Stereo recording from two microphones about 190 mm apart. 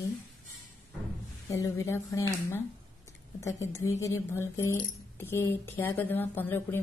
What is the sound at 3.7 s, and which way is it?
Speech, 15° left (ahead or behind).